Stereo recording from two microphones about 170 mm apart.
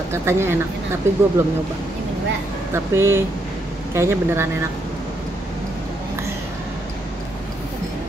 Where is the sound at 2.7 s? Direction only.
15° right (ahead or behind).